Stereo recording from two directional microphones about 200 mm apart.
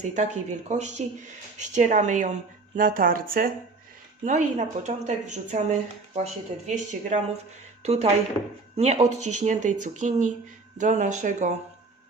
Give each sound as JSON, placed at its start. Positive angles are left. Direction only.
{"t": 0.0, "sound": "a woman's voice", "side_deg": -35}